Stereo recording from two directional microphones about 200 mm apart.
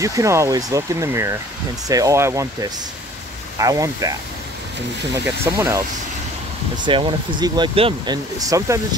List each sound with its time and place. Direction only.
0.0 s speech: 15° right (ahead or behind)
5.1 s speech: 10° right (ahead or behind)
6.8 s speech: 25° right (ahead or behind)